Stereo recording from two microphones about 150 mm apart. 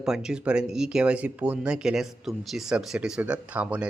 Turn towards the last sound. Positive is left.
turn(degrees=-10)  # may be behind; listen again after turning